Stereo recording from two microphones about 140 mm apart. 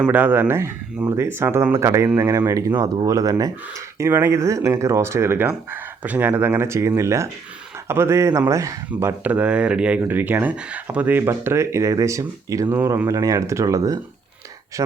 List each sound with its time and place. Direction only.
0.0 s speech: 15° right (ahead or behind); by 14.9 s 30° right (ahead or behind)